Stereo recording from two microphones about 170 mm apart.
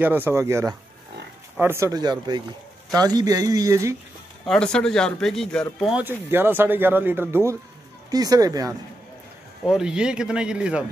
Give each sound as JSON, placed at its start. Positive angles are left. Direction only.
{"t": 0.0, "sound": "speech", "side_deg": -10}
{"t": 4.5, "sound": "speech", "side_deg": 5}
{"t": 9.7, "sound": "speech", "side_deg": -5}